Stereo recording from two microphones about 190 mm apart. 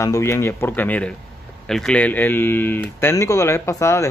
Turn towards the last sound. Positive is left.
turn(degrees=15)  # may be behind; listen again after turning